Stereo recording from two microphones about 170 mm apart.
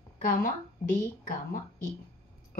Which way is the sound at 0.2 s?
55° left (ahead or behind).